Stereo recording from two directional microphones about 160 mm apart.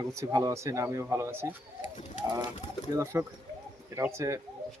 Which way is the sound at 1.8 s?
50° left (ahead or behind).